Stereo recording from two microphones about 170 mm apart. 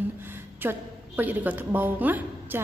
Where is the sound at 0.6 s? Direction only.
10° right (ahead or behind).